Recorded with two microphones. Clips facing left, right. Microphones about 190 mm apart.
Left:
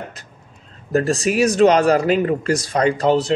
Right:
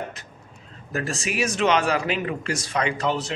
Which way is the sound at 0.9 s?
35° left (ahead or behind).